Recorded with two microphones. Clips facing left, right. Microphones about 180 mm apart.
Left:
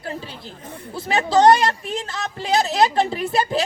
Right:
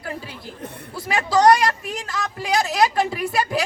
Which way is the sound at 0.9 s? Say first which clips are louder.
Left 2 dB; 25° left (ahead or behind).